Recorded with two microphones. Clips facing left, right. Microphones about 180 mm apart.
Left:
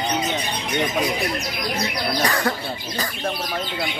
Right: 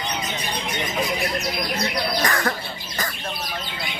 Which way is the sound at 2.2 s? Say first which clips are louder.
Left 3 dB; 15° left (ahead or behind).